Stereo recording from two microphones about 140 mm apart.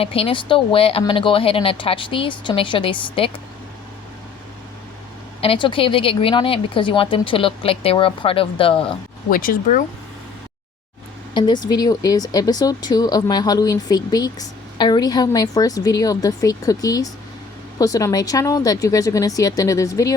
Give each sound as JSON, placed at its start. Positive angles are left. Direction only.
{"t": 0.0, "sound": "speech", "side_deg": 45}
{"t": 5.4, "sound": "speech", "side_deg": 40}
{"t": 9.3, "sound": "speech", "side_deg": 90}
{"t": 11.3, "sound": "speech", "side_deg": 35}